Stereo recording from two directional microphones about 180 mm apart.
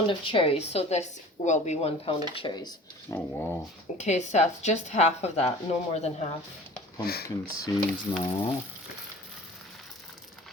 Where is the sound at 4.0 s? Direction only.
40° left (ahead or behind).